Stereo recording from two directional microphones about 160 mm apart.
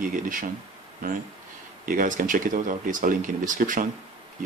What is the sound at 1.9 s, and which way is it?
Speech, 60° right (ahead or behind).